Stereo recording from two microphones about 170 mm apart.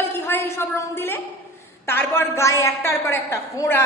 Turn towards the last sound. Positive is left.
turn(degrees=15)  # may be behind; listen again after turning